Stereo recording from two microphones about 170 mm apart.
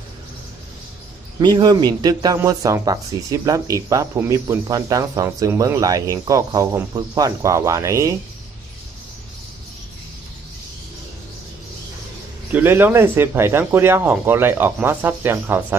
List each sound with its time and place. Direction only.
1.4 s speech: 25° right (ahead or behind)
12.5 s speech: 10° right (ahead or behind)